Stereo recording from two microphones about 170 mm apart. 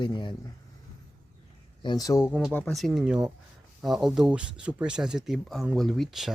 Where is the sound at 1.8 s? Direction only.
25° left (ahead or behind).